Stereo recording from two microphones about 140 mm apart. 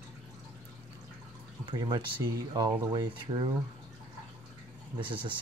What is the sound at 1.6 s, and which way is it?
Speech, 35° right (ahead or behind).